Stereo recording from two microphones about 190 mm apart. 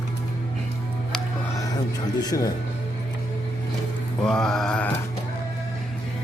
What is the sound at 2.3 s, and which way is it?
Speech, 15° left (ahead or behind).